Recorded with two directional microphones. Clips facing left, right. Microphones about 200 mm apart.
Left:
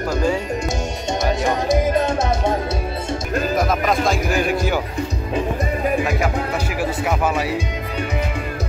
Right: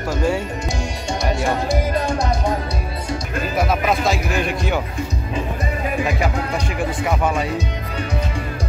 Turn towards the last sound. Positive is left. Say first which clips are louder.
# even
turn(degrees=5)  # may be behind; listen again after turning